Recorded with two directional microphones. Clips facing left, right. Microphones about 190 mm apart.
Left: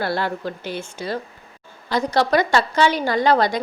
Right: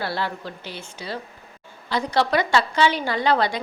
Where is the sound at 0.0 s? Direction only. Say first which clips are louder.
Left 4 dB; 50° left (ahead or behind).